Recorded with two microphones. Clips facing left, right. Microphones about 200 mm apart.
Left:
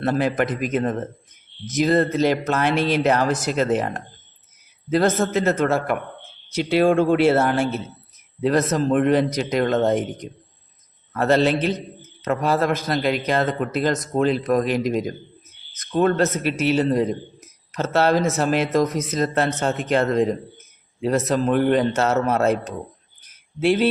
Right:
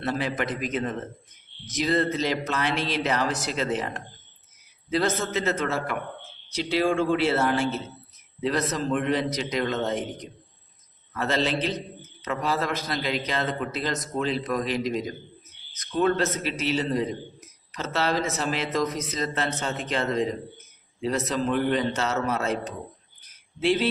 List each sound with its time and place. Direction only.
0.0 s a man's voice: 50° left (ahead or behind)
23.6 s speech: 50° left (ahead or behind)